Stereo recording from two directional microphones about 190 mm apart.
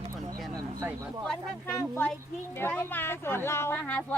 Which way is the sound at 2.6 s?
10° left (ahead or behind).